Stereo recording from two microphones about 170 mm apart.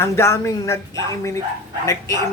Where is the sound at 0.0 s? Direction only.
15° left (ahead or behind).